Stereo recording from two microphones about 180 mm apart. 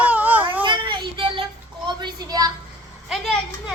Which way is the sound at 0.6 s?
25° right (ahead or behind).